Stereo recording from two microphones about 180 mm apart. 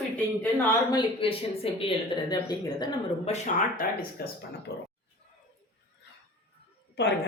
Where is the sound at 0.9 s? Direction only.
30° left (ahead or behind).